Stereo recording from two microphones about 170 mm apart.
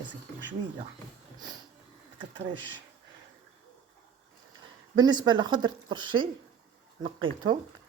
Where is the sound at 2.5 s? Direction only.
90° right.